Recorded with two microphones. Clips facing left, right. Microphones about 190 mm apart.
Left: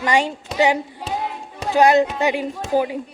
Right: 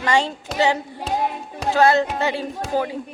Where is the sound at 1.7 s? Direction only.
15° left (ahead or behind).